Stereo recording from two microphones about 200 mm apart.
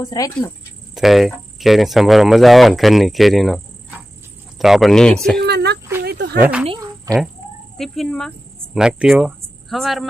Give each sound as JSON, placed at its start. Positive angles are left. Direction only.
{"t": 0.0, "sound": "speech", "side_deg": 15}
{"t": 0.9, "sound": "cricket", "side_deg": 0}
{"t": 5.4, "sound": "a sound", "side_deg": -55}
{"t": 6.0, "sound": "cricket", "side_deg": -55}
{"t": 6.4, "sound": "cricket", "side_deg": -5}
{"t": 6.7, "sound": "insect", "side_deg": -20}
{"t": 7.8, "sound": "cricket", "side_deg": 5}
{"t": 8.7, "sound": "speech", "side_deg": -5}